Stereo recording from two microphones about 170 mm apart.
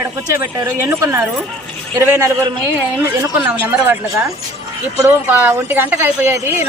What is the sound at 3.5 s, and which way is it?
A woman's voice, 10° right (ahead or behind).